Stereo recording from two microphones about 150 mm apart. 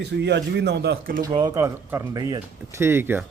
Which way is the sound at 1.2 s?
30° right (ahead or behind).